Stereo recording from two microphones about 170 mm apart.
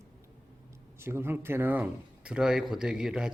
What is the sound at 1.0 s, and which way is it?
Speech, 15° right (ahead or behind).